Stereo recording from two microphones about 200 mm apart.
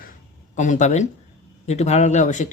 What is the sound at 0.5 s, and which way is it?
Speech, 35° left (ahead or behind).